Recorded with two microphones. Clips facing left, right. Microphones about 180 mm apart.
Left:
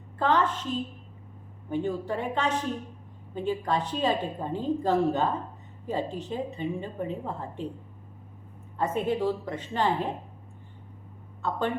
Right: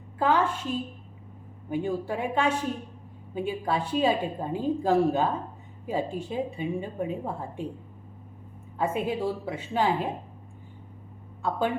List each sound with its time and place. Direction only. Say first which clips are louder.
0.2 s a woman's voice: right 1 dB; 10° right (ahead or behind)
1.7 s a woman's voice: even; 10° right (ahead or behind)
8.8 s a woman's voice: left 1 dB; 10° right (ahead or behind)